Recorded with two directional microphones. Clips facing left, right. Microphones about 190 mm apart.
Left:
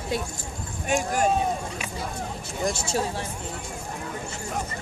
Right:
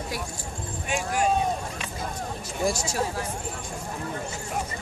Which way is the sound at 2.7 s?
25° left (ahead or behind).